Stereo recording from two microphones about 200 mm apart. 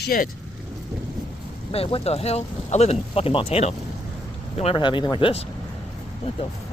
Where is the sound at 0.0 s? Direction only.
45° left (ahead or behind).